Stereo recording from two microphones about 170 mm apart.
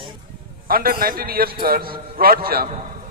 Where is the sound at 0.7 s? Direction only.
60° right (ahead or behind).